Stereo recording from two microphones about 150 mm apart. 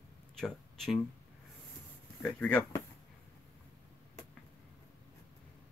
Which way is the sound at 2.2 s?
10° left (ahead or behind).